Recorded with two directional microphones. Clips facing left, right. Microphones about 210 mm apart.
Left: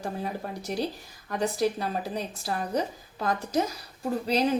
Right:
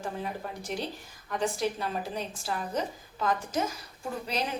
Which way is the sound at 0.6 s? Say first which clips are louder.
Left 6 dB; 40° left (ahead or behind).